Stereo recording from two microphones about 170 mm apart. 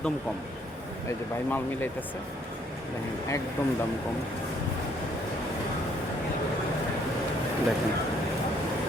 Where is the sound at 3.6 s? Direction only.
15° left (ahead or behind).